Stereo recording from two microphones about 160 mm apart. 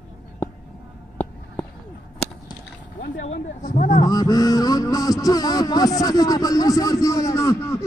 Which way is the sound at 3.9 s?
25° left (ahead or behind).